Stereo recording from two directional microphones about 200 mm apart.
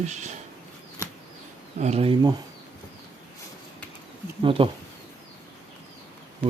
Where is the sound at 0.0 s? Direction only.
35° right (ahead or behind).